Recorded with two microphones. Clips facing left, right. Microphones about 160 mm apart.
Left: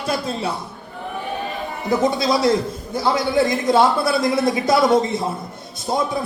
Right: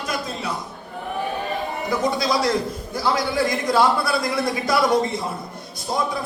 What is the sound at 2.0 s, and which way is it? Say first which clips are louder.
A man's voice: left 3 dB; 25° left (ahead or behind).